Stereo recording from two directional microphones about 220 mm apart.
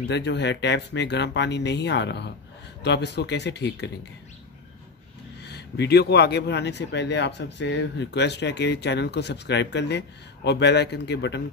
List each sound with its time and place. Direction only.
0.1 s speech: 50° left (ahead or behind)
5.4 s speech: 50° left (ahead or behind)